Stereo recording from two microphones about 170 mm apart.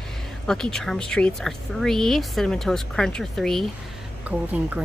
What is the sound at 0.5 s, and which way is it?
A woman's voice, 5° left (ahead or behind).